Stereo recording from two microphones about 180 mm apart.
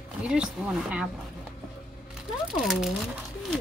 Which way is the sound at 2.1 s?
Centre (ahead or behind).